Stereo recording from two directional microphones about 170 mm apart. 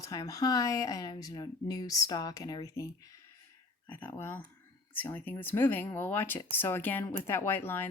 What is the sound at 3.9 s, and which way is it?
Speech, 10° left (ahead or behind).